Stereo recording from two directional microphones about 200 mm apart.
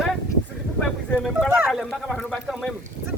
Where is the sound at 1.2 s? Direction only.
Centre (ahead or behind).